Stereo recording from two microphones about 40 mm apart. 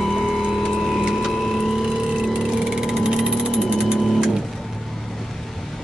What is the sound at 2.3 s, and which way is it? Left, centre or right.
Music, centre.